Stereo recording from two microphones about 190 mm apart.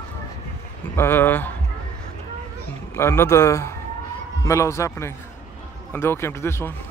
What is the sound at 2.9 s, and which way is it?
Speech, 15° left (ahead or behind).